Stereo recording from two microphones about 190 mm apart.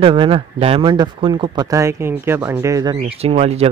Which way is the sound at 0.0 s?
30° right (ahead or behind).